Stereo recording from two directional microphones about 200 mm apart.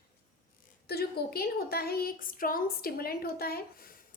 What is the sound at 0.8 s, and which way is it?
A woman's voice, 50° left (ahead or behind).